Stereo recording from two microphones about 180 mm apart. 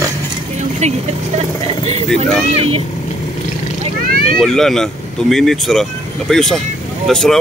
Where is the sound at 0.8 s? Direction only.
40° right (ahead or behind).